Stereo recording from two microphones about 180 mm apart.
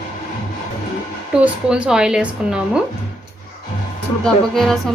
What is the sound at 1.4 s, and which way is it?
Speech, 5° right (ahead or behind).